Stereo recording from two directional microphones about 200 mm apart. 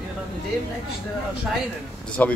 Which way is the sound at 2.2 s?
10° left (ahead or behind).